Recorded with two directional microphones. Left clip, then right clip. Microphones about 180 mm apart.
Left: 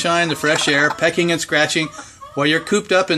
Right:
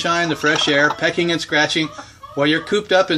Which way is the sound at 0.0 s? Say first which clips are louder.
Left 1 dB; 55° left (ahead or behind).